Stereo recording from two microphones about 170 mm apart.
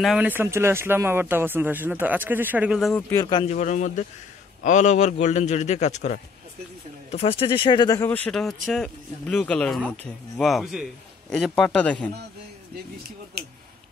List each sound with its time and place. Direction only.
0.0 s speech: 5° right (ahead or behind)
3.1 s speech: 25° left (ahead or behind)
3.4 s a man's voice: 45° left (ahead or behind); by 8.1 s 25° left (ahead or behind)
8.1 s a man's voice: 5° left (ahead or behind)
13.4 s speech: 70° right (ahead or behind)